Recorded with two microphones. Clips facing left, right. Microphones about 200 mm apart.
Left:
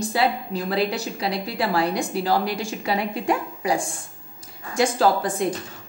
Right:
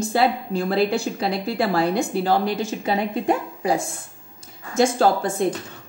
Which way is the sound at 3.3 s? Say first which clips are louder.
Right 1 dB; 40° right (ahead or behind).